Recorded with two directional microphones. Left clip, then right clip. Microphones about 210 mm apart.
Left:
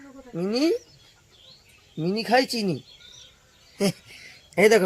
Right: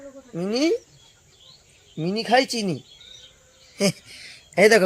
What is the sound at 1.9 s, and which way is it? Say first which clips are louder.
Speech: right 2 dB; 5° right (ahead or behind).